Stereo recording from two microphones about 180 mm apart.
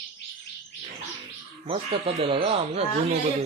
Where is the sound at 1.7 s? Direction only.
30° right (ahead or behind).